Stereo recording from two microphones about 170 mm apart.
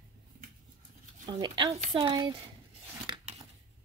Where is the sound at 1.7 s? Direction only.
35° right (ahead or behind).